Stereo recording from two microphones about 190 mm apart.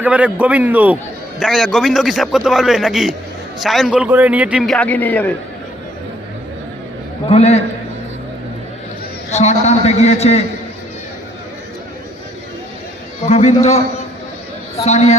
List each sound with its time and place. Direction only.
0.0 s a man's voice: 5° right (ahead or behind); by 5.3 s 10° left (ahead or behind)
7.3 s a man's voice: 35° left (ahead or behind)
9.3 s a man's voice: 35° left (ahead or behind)
13.2 s a man's voice: 35° left (ahead or behind)